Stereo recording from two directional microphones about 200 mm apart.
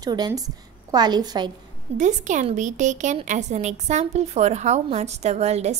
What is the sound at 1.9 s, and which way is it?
A woman's voice, 40° right (ahead or behind).